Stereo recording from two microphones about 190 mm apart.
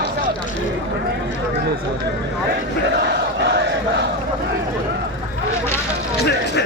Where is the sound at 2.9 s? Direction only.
60° right (ahead or behind).